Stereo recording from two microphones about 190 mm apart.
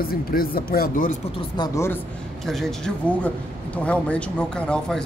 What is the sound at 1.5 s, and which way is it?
Speech, 20° left (ahead or behind).